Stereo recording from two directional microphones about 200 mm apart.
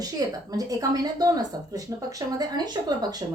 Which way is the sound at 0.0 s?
20° right (ahead or behind).